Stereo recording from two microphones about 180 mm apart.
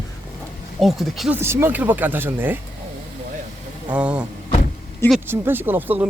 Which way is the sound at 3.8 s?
5° right (ahead or behind).